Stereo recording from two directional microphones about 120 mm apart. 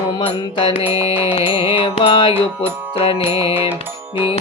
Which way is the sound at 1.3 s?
50° left (ahead or behind).